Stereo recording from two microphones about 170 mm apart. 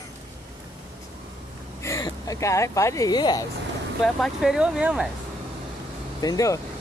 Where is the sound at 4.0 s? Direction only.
Centre (ahead or behind).